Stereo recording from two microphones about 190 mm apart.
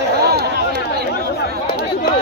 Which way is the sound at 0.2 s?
55° right (ahead or behind).